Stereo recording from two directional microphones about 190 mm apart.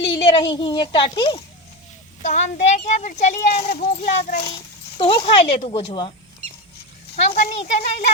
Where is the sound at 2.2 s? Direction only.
40° left (ahead or behind).